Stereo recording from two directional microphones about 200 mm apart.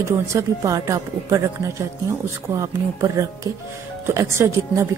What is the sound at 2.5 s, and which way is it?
A woman's voice, 15° right (ahead or behind).